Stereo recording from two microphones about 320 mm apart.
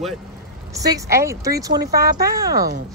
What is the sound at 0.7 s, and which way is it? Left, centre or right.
A woman's voice, centre.